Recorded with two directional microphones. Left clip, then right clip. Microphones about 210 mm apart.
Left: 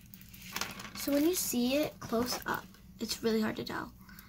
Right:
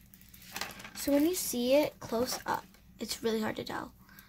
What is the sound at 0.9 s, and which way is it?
Speech, 30° right (ahead or behind).